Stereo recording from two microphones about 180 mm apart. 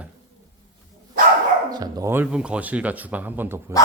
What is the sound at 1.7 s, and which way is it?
Speech, 20° right (ahead or behind).